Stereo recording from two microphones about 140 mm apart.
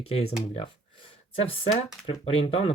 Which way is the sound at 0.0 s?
45° left (ahead or behind).